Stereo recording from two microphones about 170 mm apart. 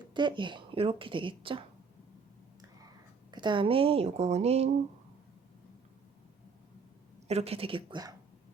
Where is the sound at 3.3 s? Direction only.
25° right (ahead or behind).